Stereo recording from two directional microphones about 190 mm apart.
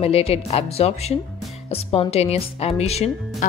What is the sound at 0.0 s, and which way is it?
Speech, 30° left (ahead or behind).